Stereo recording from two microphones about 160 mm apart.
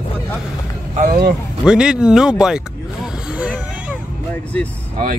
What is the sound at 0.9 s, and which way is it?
Speech, 50° right (ahead or behind).